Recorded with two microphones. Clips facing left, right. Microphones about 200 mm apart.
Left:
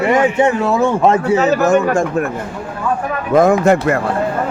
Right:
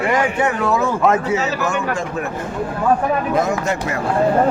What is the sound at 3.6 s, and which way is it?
Speech, 55° left (ahead or behind).